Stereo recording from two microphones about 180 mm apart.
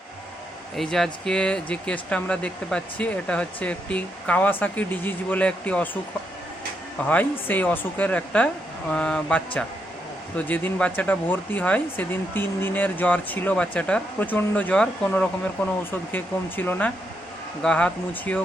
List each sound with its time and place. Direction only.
0.8 s speech: centre (ahead or behind)
7.1 s speech: 10° left (ahead or behind)